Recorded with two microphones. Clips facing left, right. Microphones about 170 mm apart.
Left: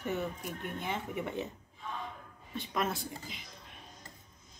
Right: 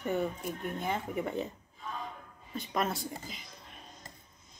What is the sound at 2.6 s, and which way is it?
Speech, centre (ahead or behind).